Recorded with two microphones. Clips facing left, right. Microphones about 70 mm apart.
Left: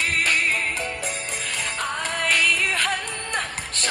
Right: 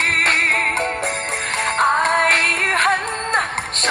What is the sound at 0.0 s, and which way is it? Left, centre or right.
Music, right.